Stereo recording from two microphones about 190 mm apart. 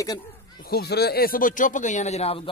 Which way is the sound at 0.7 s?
55° left (ahead or behind).